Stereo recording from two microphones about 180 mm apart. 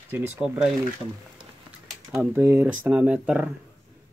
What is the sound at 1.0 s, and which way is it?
Speech, 5° left (ahead or behind).